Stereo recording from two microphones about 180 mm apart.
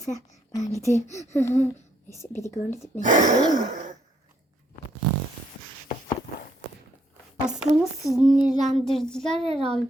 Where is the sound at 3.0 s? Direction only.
45° right (ahead or behind).